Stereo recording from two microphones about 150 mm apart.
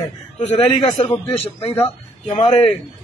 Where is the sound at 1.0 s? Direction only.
35° left (ahead or behind).